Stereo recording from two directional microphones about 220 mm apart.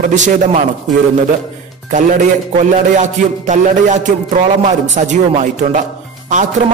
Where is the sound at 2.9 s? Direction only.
35° right (ahead or behind).